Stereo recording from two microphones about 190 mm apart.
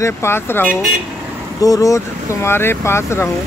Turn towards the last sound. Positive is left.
turn(degrees=15)  # may be behind; listen again after turning